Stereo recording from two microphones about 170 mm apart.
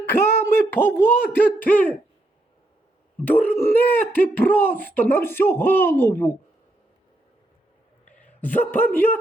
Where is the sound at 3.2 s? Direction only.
10° left (ahead or behind).